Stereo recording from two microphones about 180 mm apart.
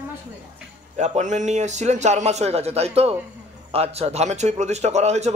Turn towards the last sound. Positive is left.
turn(degrees=-40)  # may be behind; listen again after turning